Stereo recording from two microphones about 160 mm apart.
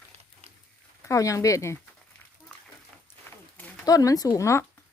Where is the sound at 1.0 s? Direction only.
20° left (ahead or behind).